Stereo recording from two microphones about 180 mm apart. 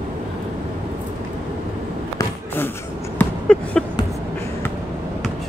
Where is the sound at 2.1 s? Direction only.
10° left (ahead or behind).